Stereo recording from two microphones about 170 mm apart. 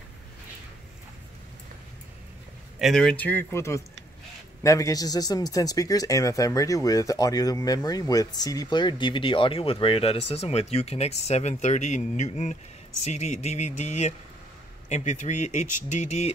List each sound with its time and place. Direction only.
2.8 s speech: 5° left (ahead or behind); by 16.3 s 40° left (ahead or behind)